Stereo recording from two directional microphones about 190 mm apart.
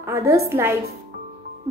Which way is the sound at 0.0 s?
15° right (ahead or behind).